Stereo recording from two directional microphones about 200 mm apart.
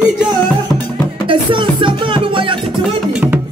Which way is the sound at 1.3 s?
25° right (ahead or behind).